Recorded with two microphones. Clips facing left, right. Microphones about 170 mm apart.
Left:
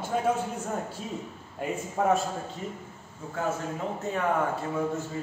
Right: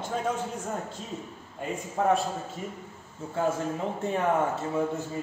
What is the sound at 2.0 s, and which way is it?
Speech, 5° left (ahead or behind).